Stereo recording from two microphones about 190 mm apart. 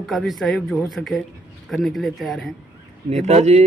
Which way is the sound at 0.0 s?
Centre (ahead or behind).